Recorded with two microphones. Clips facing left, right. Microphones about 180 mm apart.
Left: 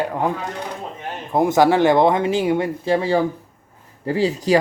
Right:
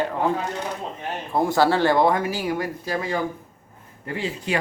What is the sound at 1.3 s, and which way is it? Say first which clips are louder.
Speech: left 4 dB; 20° left (ahead or behind).